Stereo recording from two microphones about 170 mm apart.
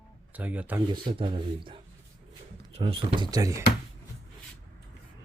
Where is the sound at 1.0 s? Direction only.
30° right (ahead or behind).